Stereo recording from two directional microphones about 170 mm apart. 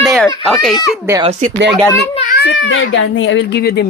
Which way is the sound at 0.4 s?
Centre (ahead or behind).